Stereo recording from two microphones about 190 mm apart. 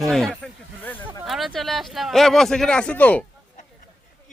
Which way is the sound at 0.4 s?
10° left (ahead or behind).